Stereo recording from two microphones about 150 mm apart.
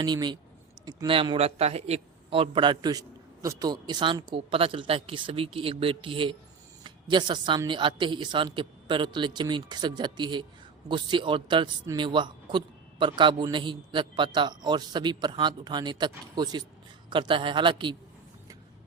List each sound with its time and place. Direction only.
0.0 s a man's voice: 30° right (ahead or behind)